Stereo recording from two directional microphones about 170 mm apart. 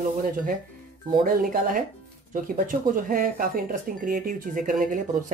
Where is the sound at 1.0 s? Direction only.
60° right (ahead or behind).